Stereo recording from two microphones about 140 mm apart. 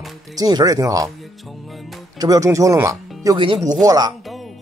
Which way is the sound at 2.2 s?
25° right (ahead or behind).